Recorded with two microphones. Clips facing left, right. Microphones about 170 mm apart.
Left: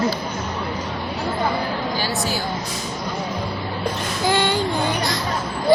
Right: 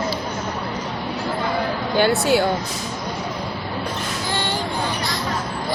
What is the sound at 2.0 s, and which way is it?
Speech, 60° right (ahead or behind).